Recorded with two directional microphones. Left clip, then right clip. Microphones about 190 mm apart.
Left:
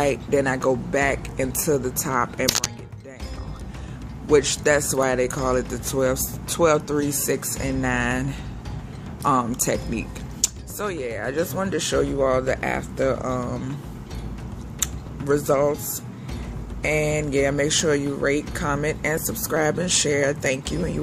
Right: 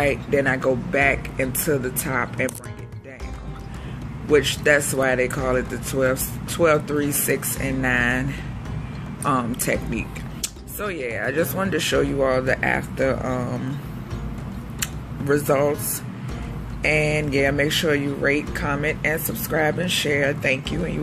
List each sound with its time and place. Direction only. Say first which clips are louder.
0.0 s speech: right 1 dB; 20° left (ahead or behind)
4.3 s speech: right 1 dB; 20° left (ahead or behind)
11.0 s speech: right 4 dB; 10° left (ahead or behind)
14.8 s a sound: even; 10° left (ahead or behind)
16.8 s speech: right 2 dB; 10° left (ahead or behind)